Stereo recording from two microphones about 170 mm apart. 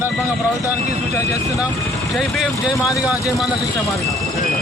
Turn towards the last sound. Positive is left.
turn(degrees=0)  # may be behind; listen again after turning